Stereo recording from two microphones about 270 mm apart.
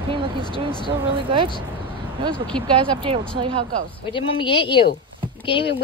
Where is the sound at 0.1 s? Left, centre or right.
Centre.